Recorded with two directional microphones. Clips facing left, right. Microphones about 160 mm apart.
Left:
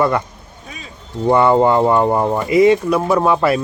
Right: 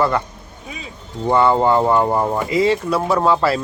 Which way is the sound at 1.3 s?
15° left (ahead or behind).